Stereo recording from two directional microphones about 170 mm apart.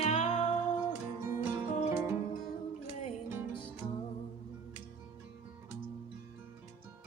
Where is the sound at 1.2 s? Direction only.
15° right (ahead or behind).